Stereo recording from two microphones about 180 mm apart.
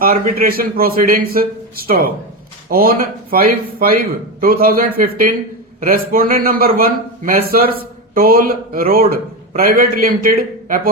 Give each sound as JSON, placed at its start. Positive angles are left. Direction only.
{"t": 0.0, "sound": "a man's voice", "side_deg": -55}